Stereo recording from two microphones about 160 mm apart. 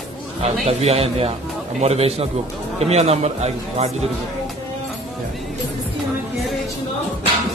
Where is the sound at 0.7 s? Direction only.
40° right (ahead or behind).